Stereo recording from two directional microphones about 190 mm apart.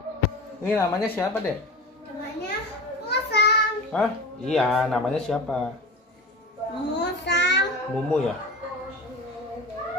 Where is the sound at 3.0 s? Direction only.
60° left (ahead or behind).